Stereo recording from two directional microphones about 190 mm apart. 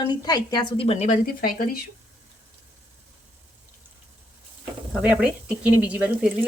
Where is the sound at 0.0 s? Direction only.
20° left (ahead or behind); by 1.8 s 50° left (ahead or behind).